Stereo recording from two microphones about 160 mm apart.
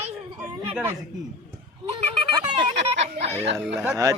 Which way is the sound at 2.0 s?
40° right (ahead or behind).